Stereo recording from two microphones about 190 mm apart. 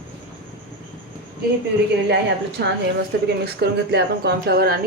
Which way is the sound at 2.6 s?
65° right (ahead or behind).